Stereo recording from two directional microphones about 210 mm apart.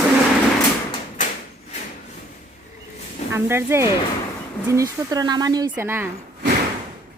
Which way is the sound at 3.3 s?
10° right (ahead or behind).